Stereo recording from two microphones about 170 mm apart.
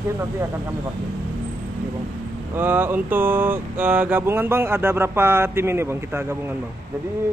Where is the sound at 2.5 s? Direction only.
10° right (ahead or behind).